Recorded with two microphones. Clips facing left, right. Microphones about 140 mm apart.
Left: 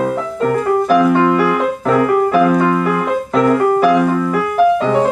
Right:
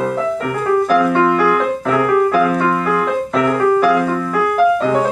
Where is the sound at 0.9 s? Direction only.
15° left (ahead or behind).